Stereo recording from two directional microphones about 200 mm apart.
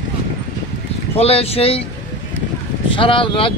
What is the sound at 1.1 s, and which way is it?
Speech, 30° left (ahead or behind).